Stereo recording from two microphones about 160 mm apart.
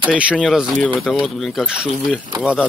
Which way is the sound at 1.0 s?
5° right (ahead or behind).